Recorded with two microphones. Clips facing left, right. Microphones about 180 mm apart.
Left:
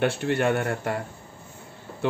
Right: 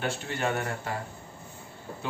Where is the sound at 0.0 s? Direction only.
60° left (ahead or behind).